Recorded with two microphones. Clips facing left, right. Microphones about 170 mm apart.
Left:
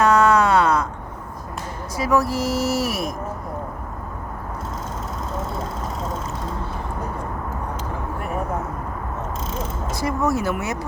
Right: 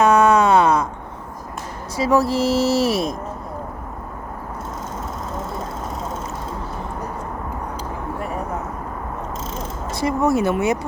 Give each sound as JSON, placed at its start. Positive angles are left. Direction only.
{"t": 0.0, "sound": "a sound", "side_deg": -20}
{"t": 2.0, "sound": "speech", "side_deg": -25}
{"t": 10.0, "sound": "speech", "side_deg": -25}